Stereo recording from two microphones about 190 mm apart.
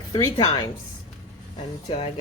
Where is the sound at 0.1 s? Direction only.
20° left (ahead or behind).